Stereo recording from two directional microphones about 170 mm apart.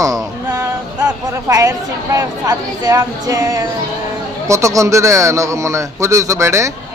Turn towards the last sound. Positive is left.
turn(degrees=-15)  # may be behind; listen again after turning